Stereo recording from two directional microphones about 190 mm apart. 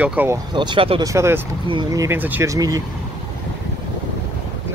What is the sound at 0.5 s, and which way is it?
Speech, 25° right (ahead or behind).